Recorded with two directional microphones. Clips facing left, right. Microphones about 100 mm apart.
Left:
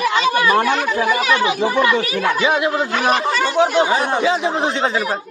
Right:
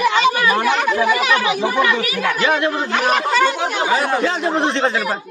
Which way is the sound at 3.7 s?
30° left (ahead or behind).